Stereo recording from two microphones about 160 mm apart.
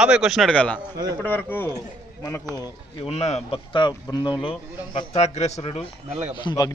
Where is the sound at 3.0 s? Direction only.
40° left (ahead or behind).